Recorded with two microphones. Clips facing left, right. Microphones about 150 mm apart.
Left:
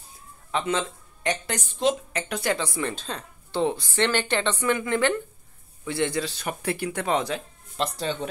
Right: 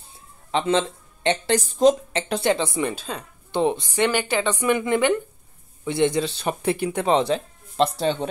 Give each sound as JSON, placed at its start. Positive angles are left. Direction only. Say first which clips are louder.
{"t": 0.5, "sound": "speech", "louder": "right 5 dB", "side_deg": -25}
{"t": 2.9, "sound": "speech", "louder": "right 2 dB", "side_deg": -10}